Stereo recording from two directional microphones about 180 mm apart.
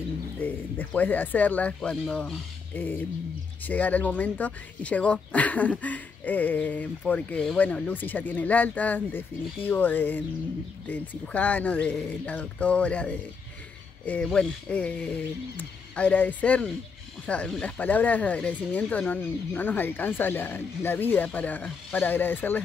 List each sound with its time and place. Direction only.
0.4 s speech: 10° left (ahead or behind)